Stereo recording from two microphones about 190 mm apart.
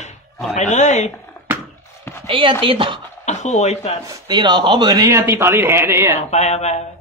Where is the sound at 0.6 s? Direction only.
40° left (ahead or behind).